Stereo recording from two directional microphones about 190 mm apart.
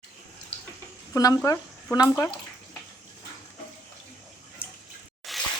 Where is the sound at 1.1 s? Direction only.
20° left (ahead or behind).